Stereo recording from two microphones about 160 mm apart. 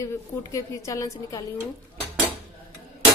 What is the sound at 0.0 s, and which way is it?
A woman's voice, 20° left (ahead or behind).